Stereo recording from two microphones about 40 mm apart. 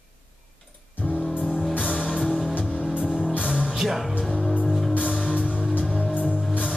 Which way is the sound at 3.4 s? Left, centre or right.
Centre.